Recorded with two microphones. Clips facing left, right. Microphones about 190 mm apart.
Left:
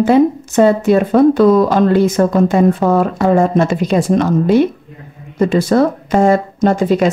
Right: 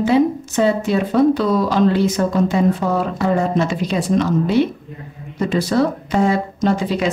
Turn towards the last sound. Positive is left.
turn(degrees=50)  # may be behind; listen again after turning